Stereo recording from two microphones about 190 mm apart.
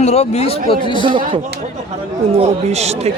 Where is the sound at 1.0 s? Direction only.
25° right (ahead or behind).